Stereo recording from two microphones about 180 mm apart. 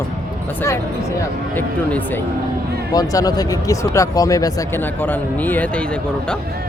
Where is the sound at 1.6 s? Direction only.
10° left (ahead or behind).